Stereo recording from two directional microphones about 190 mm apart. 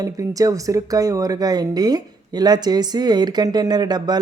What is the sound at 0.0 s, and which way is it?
Speech, 20° right (ahead or behind).